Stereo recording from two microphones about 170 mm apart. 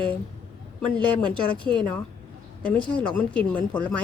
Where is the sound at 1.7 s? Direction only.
5° left (ahead or behind).